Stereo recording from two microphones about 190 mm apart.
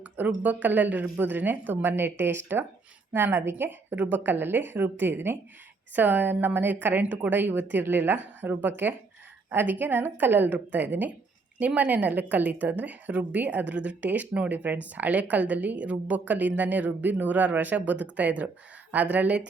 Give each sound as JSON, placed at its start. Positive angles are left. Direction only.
{"t": 0.0, "sound": "a woman's voice", "side_deg": -10}